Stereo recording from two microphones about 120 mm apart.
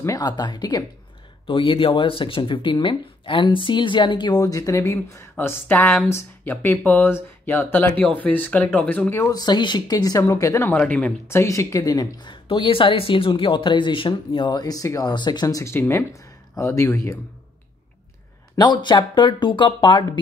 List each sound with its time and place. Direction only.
0.0 s a woman's voice: 30° left (ahead or behind)
1.5 s speech: 45° left (ahead or behind); by 9.3 s 15° left (ahead or behind)
9.3 s a woman's voice: 35° left (ahead or behind)
10.8 s speech: 10° left (ahead or behind)
11.2 s a woman's voice: 25° left (ahead or behind)
18.6 s a woman's voice: 40° left (ahead or behind)